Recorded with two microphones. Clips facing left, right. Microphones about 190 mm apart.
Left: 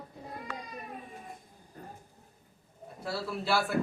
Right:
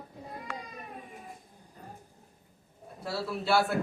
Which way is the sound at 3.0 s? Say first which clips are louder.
Right 1 dB; centre (ahead or behind).